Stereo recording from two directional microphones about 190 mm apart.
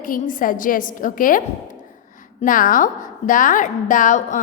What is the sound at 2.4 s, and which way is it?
A woman's voice, 45° left (ahead or behind).